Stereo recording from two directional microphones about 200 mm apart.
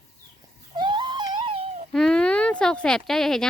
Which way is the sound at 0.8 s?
25° right (ahead or behind).